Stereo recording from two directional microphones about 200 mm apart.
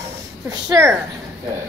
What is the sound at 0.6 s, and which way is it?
Speech, 10° right (ahead or behind).